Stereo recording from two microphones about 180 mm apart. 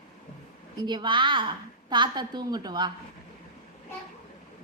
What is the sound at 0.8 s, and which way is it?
A woman's voice, 25° right (ahead or behind).